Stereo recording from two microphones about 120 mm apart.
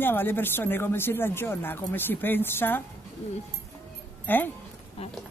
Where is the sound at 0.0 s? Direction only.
15° left (ahead or behind).